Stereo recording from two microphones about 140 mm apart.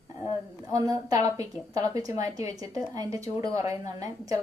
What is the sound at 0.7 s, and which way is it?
A woman's voice, 25° right (ahead or behind).